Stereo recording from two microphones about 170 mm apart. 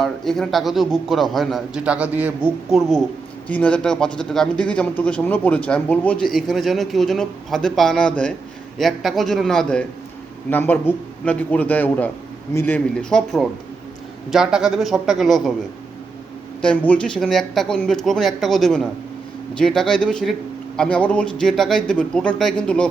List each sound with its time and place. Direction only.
0.0 s a man's voice: centre (ahead or behind)
16.6 s speech: 5° left (ahead or behind)